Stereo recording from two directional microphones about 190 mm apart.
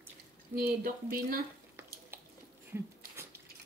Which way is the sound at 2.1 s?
10° right (ahead or behind).